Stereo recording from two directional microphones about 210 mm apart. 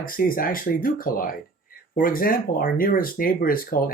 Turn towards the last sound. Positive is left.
turn(degrees=40)  # may be behind; listen again after turning